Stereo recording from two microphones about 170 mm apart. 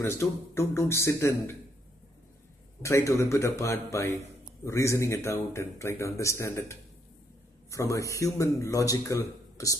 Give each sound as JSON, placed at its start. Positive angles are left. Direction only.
{"t": 0.0, "sound": "speech", "side_deg": 15}
{"t": 2.8, "sound": "speech", "side_deg": 15}